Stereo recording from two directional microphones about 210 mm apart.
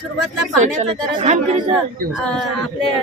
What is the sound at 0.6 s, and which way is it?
Speech, 35° right (ahead or behind).